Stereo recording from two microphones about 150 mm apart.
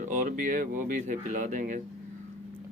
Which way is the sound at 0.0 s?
60° right (ahead or behind).